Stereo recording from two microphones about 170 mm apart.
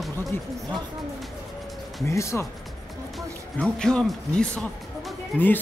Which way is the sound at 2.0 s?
15° left (ahead or behind).